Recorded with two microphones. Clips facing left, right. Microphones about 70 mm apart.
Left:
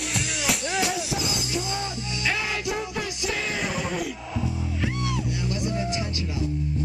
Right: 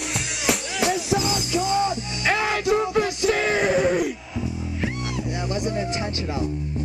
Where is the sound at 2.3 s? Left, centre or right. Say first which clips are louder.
Right 7 dB; right.